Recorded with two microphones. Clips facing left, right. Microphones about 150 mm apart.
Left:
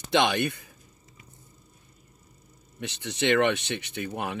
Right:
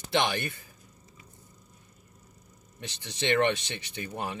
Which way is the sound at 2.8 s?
60° left (ahead or behind).